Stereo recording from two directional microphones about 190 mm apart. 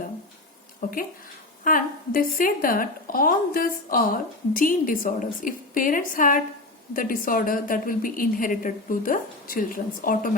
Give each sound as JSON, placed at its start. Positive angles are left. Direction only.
{"t": 0.8, "sound": "a woman's voice", "side_deg": 50}